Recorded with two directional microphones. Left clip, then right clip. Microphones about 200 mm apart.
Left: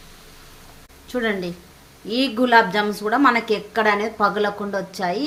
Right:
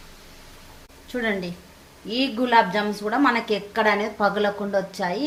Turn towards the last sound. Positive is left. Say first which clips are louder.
# left 1 dB
turn(degrees=25)  # may be behind; listen again after turning